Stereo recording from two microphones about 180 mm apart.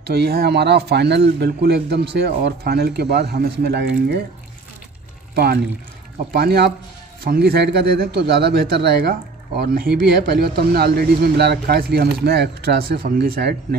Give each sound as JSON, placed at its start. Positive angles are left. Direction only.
{"t": 0.0, "sound": "speech", "side_deg": -65}
{"t": 5.3, "sound": "speech", "side_deg": -60}